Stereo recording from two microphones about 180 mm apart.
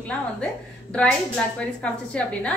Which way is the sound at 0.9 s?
5° left (ahead or behind).